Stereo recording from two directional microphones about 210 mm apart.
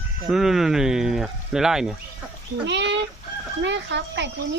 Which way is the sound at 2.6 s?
55° right (ahead or behind).